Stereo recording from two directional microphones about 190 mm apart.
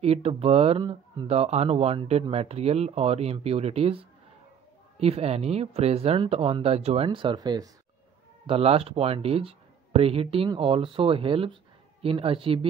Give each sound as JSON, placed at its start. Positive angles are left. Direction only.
{"t": 0.0, "sound": "speech", "side_deg": -30}
{"t": 8.5, "sound": "speech", "side_deg": -30}